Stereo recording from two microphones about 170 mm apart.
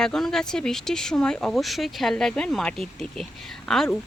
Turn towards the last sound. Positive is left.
turn(degrees=0)  # may be behind; listen again after turning